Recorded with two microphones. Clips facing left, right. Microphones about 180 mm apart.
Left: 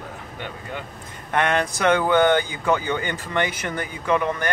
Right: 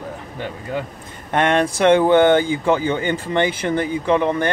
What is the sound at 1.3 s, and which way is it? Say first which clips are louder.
Speech: right 4 dB; 25° right (ahead or behind).